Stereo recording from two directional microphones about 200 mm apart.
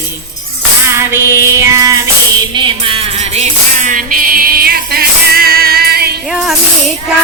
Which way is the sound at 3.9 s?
45° right (ahead or behind).